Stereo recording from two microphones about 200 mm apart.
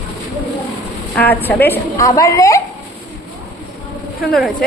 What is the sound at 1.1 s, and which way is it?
A woman's voice, 10° left (ahead or behind).